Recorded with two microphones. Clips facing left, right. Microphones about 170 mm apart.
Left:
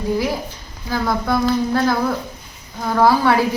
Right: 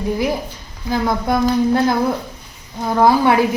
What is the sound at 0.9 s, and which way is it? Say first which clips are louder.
A woman's voice: right 2 dB; 20° right (ahead or behind).